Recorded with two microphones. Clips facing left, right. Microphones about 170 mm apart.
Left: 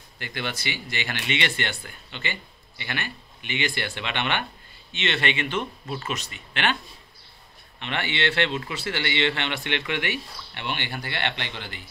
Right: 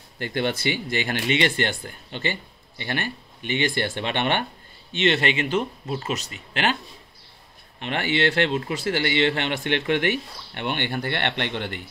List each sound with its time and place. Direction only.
0.2 s speech: 50° right (ahead or behind)
7.8 s speech: 45° right (ahead or behind); by 11.8 s 60° right (ahead or behind)